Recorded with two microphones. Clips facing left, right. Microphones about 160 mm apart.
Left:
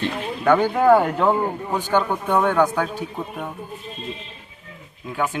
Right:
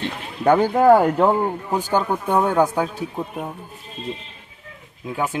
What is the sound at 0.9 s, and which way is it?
Speech, 10° right (ahead or behind).